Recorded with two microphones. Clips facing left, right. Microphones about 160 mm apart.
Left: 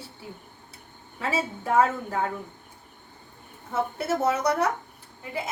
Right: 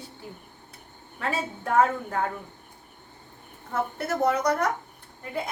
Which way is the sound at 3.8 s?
10° left (ahead or behind).